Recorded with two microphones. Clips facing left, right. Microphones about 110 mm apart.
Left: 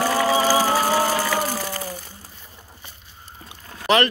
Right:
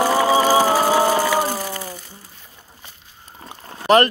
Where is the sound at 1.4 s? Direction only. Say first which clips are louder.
Right 3 dB; 30° right (ahead or behind).